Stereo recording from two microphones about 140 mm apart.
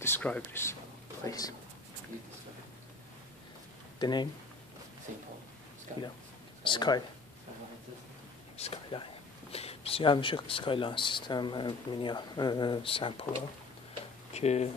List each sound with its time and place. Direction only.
0.0 s speech: 15° left (ahead or behind)
1.2 s speech: 25° left (ahead or behind)
4.0 s speech: 30° left (ahead or behind)
5.9 s speech: 60° right (ahead or behind)
6.6 s speech: 35° left (ahead or behind)
8.5 s speech: 45° left (ahead or behind)
14.3 s speech: 50° left (ahead or behind)